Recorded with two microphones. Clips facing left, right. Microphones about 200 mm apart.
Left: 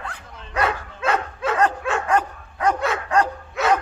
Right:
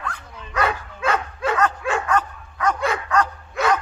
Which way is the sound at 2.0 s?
30° left (ahead or behind).